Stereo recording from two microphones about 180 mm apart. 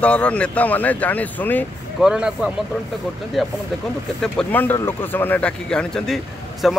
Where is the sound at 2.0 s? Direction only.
5° right (ahead or behind).